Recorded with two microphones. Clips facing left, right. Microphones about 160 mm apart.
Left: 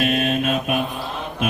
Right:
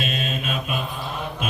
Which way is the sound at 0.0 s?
65° left (ahead or behind).